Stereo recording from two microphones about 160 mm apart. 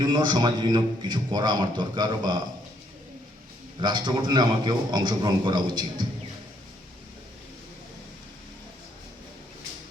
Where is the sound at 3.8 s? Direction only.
30° right (ahead or behind).